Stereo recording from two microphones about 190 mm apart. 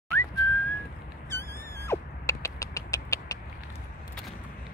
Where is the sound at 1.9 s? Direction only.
15° left (ahead or behind).